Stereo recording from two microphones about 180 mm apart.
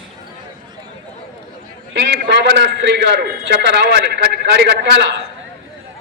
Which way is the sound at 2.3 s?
75° right (ahead or behind).